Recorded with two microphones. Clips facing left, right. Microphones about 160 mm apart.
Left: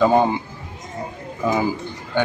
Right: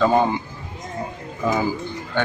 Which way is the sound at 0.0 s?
15° left (ahead or behind).